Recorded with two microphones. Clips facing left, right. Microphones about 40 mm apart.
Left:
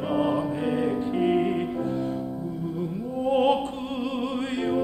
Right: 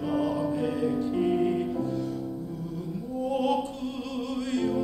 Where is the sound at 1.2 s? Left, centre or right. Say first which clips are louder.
Left 4 dB; left.